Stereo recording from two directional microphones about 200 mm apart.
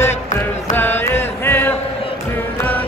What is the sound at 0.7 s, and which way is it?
Music, 10° left (ahead or behind).